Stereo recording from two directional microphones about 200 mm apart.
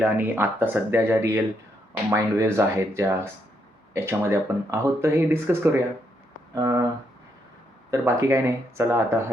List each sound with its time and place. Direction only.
0.0 s speech: 10° right (ahead or behind)
7.9 s speech: 15° right (ahead or behind)